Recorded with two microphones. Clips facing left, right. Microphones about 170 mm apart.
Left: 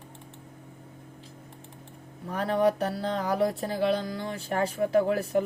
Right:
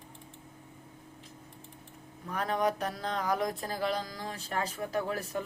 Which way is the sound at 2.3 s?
30° left (ahead or behind).